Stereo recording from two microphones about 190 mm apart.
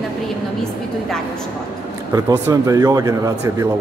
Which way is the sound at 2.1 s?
15° right (ahead or behind).